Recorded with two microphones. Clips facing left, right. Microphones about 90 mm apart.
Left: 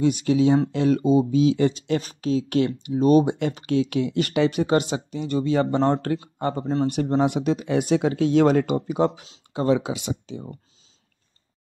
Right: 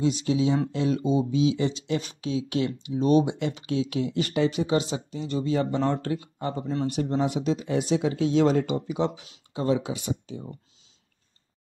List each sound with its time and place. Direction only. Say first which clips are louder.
0.0 s speech: left 5 dB; 60° left (ahead or behind)
6.6 s speech: left 5 dB; 35° left (ahead or behind)
6.9 s speech: left 3 dB; 60° left (ahead or behind)
9.5 s speech: left 4 dB; 60° left (ahead or behind); by 10.4 s 90° left